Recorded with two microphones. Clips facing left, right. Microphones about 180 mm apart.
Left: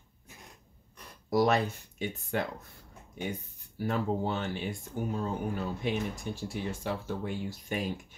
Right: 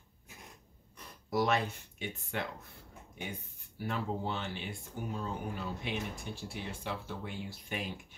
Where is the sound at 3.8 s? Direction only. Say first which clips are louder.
Left 6 dB; 45° left (ahead or behind).